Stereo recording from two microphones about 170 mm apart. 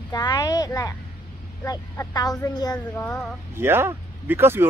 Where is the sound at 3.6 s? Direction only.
15° right (ahead or behind).